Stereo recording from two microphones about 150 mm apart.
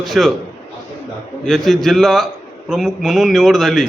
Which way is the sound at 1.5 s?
Centre (ahead or behind).